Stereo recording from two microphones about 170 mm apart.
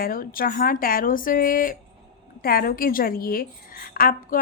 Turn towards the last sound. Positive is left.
turn(degrees=55)  # may be behind; listen again after turning